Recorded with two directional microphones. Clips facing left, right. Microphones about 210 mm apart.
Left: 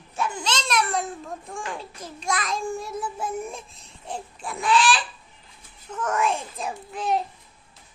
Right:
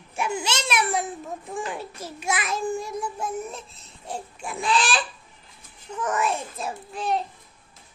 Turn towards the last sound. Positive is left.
turn(degrees=0)  # may be behind; listen again after turning